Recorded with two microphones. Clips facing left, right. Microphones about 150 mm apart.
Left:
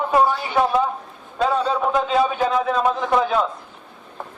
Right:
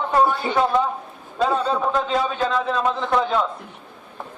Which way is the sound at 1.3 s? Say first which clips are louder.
Left 1 dB; centre (ahead or behind).